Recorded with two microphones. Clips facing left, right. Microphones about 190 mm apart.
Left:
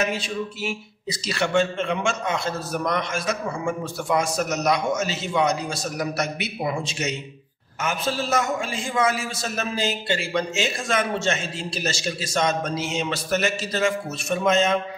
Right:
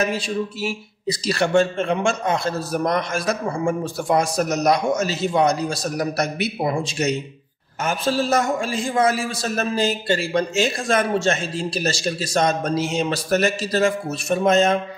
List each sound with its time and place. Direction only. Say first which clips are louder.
0.7 s a man's voice: right 4 dB; 35° right (ahead or behind)